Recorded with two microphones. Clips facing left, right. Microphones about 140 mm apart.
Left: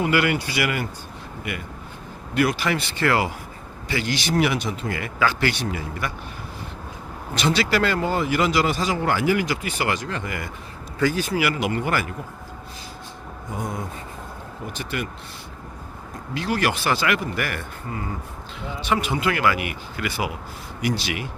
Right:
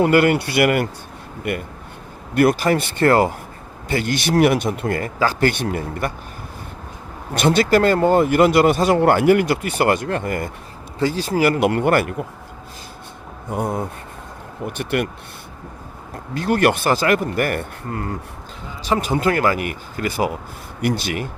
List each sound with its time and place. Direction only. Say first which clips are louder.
0.0 s speech: right 6 dB; 50° right (ahead or behind)
5.0 s speech: right 3 dB; 40° right (ahead or behind)
7.3 s speech: right 6 dB; 50° right (ahead or behind)
11.0 s speech: right 4 dB; 30° right (ahead or behind)
11.5 s speech: right 7 dB; 55° right (ahead or behind)
13.5 s speech: right 7 dB; 60° right (ahead or behind)
16.3 s speech: right 6 dB; 50° right (ahead or behind)
18.9 s speech: right 4 dB; 40° right (ahead or behind)